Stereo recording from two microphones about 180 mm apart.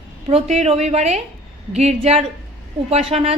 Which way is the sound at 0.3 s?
35° right (ahead or behind).